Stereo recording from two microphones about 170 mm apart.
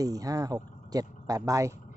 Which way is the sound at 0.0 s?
20° right (ahead or behind).